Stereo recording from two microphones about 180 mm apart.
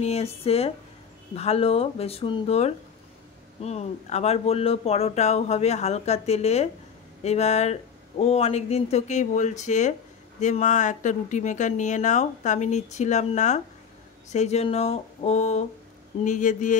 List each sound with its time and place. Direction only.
0.0 s speech: 35° left (ahead or behind)